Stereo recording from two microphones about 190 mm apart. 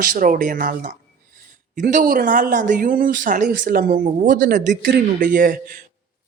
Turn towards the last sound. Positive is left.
turn(degrees=-50)  # may be behind; listen again after turning